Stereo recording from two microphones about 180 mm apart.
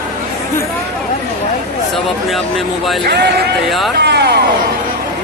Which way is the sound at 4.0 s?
65° right (ahead or behind).